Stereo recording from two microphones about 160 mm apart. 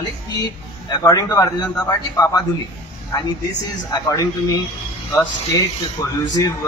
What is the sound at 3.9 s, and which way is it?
A man's voice, 20° left (ahead or behind).